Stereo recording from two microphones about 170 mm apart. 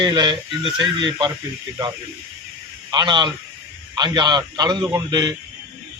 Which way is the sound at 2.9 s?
25° right (ahead or behind).